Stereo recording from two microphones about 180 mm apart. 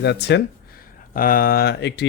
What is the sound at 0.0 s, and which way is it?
Speech, 70° left (ahead or behind).